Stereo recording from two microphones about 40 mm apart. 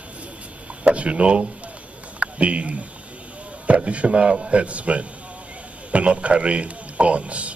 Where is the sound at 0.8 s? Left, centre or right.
Right.